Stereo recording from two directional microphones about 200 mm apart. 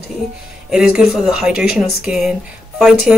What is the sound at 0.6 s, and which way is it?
Speech, 5° right (ahead or behind).